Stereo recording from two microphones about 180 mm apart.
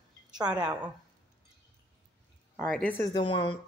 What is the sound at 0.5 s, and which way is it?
Speech, 10° right (ahead or behind).